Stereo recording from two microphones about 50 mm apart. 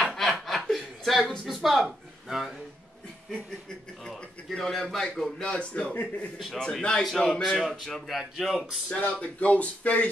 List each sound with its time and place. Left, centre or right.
0.2 s chuckle: centre
4.1 s a man's voice: centre
5.4 s speech: left
6.3 s speech: centre
6.8 s a man's voice: centre
7.4 s speech: centre
8.8 s speech: left